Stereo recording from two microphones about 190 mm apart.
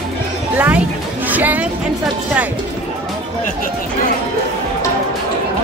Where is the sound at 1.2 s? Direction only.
10° right (ahead or behind).